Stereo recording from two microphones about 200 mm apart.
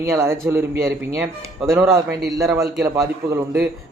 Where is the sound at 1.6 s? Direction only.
15° right (ahead or behind).